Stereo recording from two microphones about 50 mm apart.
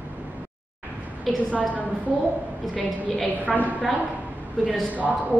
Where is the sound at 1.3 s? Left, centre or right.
Centre.